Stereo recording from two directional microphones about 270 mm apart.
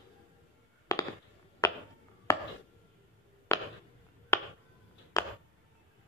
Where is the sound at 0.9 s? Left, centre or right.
Centre.